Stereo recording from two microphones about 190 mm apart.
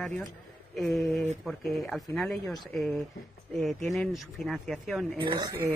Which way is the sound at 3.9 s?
Centre (ahead or behind).